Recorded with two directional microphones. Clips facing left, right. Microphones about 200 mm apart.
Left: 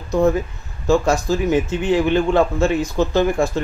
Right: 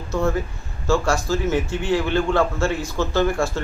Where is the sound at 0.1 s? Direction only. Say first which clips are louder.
Left 6 dB; 15° left (ahead or behind).